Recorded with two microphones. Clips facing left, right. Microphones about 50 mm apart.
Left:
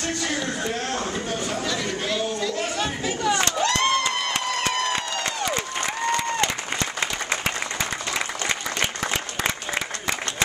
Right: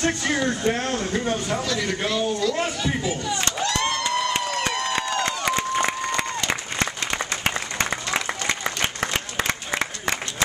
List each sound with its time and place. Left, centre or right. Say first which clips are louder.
0.0 s speech: right 4 dB; right
1.7 s a man's voice: right 2 dB; centre
7.4 s applause: right 2 dB; right